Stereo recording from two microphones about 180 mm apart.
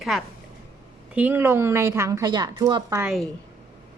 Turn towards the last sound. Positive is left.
turn(degrees=-5)  # may be behind; listen again after turning